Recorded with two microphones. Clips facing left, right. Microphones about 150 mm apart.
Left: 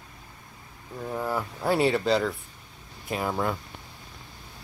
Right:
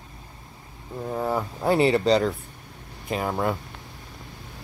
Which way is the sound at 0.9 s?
15° right (ahead or behind).